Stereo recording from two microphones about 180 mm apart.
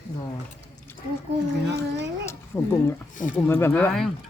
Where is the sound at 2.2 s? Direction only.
15° left (ahead or behind).